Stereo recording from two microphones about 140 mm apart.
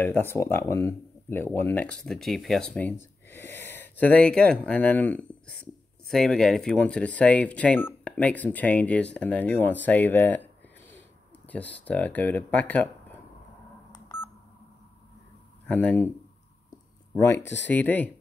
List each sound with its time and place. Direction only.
0.0 s speech: 15° left (ahead or behind)
2.0 s speech: centre (ahead or behind)
15.6 s speech: 10° left (ahead or behind)
17.1 s speech: 20° left (ahead or behind)